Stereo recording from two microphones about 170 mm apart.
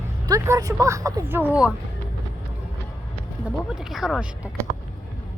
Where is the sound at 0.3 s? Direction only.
20° right (ahead or behind).